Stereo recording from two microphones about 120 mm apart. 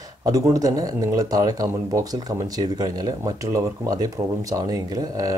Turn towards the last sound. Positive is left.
turn(degrees=-30)  # may be behind; listen again after turning